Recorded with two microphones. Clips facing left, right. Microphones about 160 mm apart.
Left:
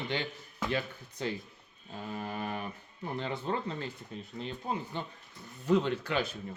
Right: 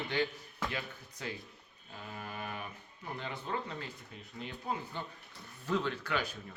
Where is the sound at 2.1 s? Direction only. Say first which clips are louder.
Left 6 dB; 35° left (ahead or behind).